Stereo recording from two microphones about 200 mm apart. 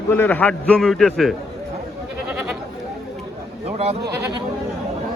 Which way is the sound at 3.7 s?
30° right (ahead or behind).